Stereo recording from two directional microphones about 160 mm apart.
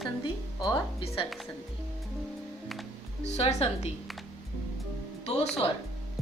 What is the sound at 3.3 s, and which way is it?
Speech, 40° left (ahead or behind).